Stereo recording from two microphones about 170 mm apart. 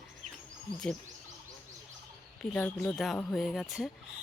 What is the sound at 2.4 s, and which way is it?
Speech, 5° left (ahead or behind).